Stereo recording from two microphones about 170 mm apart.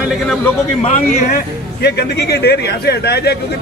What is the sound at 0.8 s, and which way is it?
Speech, 45° left (ahead or behind).